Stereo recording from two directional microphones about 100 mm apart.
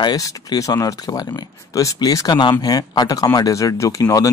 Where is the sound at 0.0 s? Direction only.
40° left (ahead or behind).